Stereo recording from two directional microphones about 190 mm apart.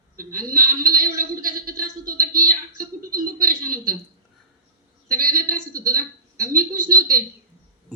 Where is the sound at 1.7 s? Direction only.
50° right (ahead or behind).